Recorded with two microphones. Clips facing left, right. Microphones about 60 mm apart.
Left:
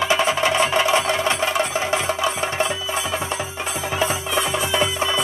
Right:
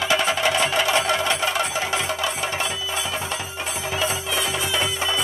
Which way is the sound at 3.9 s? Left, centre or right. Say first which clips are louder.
Left 3 dB; left.